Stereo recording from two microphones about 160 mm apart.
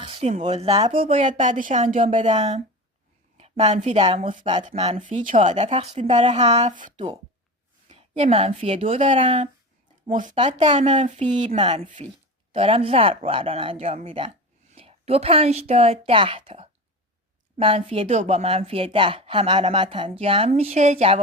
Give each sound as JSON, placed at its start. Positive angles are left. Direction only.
{"t": 0.0, "sound": "speech", "side_deg": -35}
{"t": 1.1, "sound": "speech", "side_deg": -50}
{"t": 3.6, "sound": "speech", "side_deg": -45}
{"t": 7.9, "sound": "a woman's voice", "side_deg": -35}
{"t": 10.1, "sound": "speech", "side_deg": -55}
{"t": 10.7, "sound": "a woman's voice", "side_deg": -30}
{"t": 11.0, "sound": "speech", "side_deg": -50}
{"t": 11.6, "sound": "a woman's voice", "side_deg": -35}